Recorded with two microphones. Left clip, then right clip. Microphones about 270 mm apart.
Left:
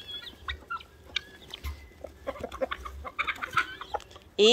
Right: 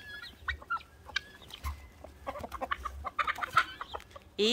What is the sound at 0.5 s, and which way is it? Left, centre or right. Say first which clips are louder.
Chicken: right 2 dB; centre.